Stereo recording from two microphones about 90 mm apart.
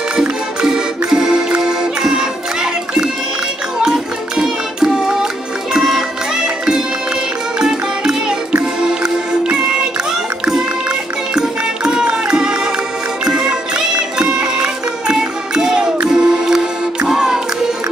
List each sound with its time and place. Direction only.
0.1 s music: 5° right (ahead or behind)
11.3 s music: 10° right (ahead or behind)